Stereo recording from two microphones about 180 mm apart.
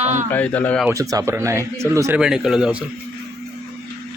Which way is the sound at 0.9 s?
15° right (ahead or behind).